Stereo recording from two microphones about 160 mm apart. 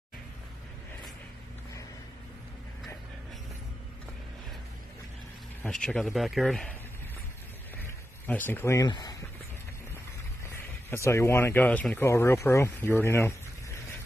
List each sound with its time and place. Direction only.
5.6 s speech: 5° left (ahead or behind)
8.3 s speech: 10° left (ahead or behind)
10.9 s speech: 15° left (ahead or behind)